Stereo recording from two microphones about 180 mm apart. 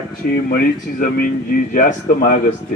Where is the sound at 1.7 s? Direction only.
50° left (ahead or behind).